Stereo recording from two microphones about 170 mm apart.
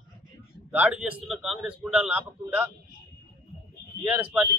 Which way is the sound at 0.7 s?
5° right (ahead or behind).